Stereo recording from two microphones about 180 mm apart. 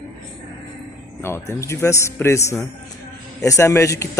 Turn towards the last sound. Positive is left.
turn(degrees=15)  # may be behind; listen again after turning